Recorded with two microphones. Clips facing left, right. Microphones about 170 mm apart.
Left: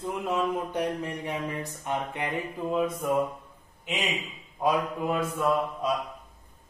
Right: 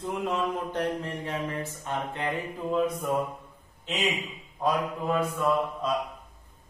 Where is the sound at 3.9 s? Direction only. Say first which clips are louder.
Right 2 dB; 10° left (ahead or behind).